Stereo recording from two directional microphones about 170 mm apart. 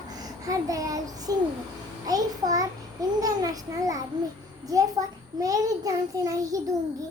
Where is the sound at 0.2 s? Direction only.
20° right (ahead or behind).